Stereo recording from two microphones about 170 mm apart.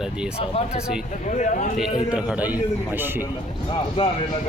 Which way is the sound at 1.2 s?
45° left (ahead or behind).